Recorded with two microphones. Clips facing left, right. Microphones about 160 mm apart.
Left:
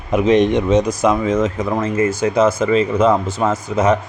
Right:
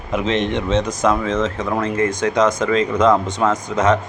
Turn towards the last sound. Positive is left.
turn(degrees=10)  # may be behind; listen again after turning